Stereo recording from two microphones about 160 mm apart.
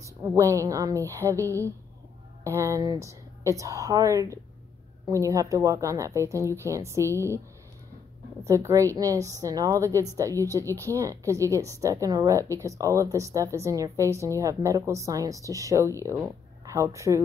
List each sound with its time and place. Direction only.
0.2 s a woman's voice: 15° right (ahead or behind)
8.5 s a woman's voice: 20° right (ahead or behind)